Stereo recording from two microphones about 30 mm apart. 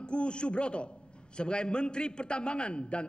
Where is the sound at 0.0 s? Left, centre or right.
Left.